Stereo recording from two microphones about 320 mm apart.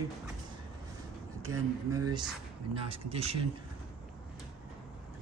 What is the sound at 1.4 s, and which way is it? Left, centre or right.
Speech, centre.